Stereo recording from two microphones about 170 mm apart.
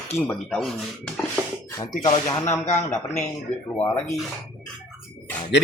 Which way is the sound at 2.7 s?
10° left (ahead or behind).